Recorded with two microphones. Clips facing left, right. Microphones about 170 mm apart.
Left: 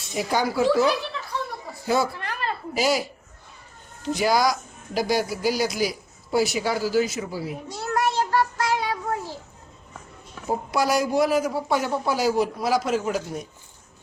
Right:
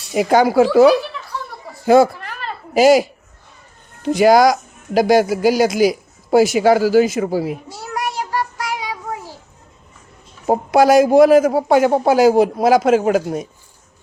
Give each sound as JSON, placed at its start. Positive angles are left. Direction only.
{"t": 0.1, "sound": "a woman's voice", "side_deg": -75}
{"t": 2.7, "sound": "speech", "side_deg": -90}
{"t": 4.0, "sound": "speech", "side_deg": -70}
{"t": 7.1, "sound": "speech", "side_deg": -80}
{"t": 7.8, "sound": "child singing", "side_deg": -10}
{"t": 10.4, "sound": "speech", "side_deg": -75}